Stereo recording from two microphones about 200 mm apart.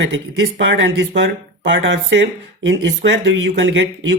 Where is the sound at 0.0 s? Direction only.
65° right (ahead or behind).